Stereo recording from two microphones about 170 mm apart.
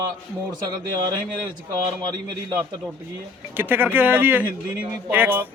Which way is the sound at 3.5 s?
10° right (ahead or behind).